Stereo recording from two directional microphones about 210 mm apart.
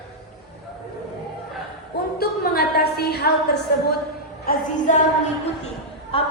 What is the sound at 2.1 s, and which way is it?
A woman's voice, 45° left (ahead or behind).